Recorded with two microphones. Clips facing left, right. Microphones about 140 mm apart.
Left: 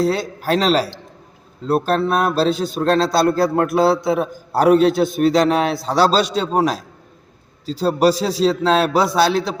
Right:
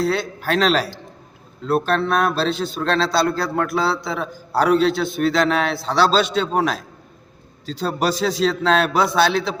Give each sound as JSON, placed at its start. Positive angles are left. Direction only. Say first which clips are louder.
{"t": 0.0, "sound": "a man's voice", "louder": "left 2 dB", "side_deg": 40}